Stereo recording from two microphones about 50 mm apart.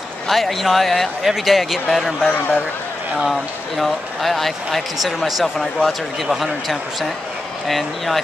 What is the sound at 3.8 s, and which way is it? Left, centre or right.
Speech, centre.